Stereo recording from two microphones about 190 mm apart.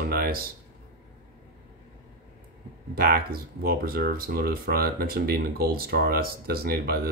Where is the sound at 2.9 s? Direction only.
50° right (ahead or behind).